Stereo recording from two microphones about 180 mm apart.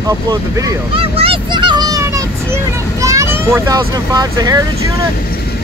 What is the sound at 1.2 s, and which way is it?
Vehicle, 30° right (ahead or behind).